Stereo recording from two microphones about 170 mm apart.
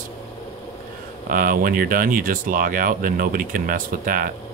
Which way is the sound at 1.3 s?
55° right (ahead or behind).